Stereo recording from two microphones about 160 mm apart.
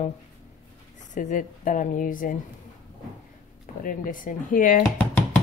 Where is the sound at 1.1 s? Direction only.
55° left (ahead or behind).